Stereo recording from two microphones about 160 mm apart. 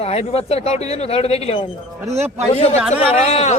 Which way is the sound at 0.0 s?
40° left (ahead or behind).